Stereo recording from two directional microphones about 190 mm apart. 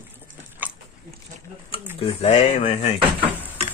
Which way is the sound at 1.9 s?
30° left (ahead or behind).